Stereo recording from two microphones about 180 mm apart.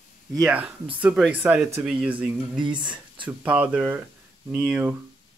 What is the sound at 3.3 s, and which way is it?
Speech, 5° right (ahead or behind).